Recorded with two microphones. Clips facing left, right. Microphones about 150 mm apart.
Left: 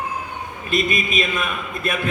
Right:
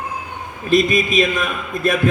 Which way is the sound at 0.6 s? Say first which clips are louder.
Right 7 dB; 40° right (ahead or behind).